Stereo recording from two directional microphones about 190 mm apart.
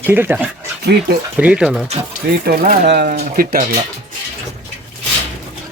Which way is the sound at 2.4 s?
50° right (ahead or behind).